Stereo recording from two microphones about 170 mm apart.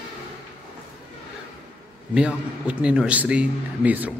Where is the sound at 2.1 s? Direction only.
5° right (ahead or behind).